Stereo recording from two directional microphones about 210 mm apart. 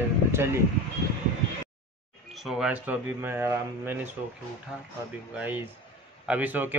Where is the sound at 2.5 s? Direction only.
5° right (ahead or behind).